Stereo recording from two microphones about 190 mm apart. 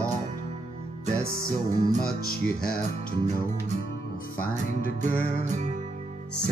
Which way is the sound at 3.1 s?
40° right (ahead or behind).